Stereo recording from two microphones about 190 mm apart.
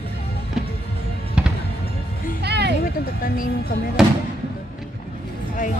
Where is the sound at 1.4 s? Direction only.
5° right (ahead or behind).